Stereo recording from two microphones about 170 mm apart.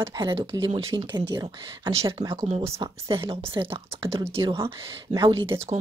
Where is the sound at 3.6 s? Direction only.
25° right (ahead or behind).